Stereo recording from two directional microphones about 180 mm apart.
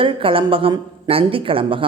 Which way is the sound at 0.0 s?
30° right (ahead or behind).